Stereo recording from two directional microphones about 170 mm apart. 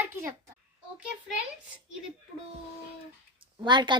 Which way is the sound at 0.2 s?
20° right (ahead or behind).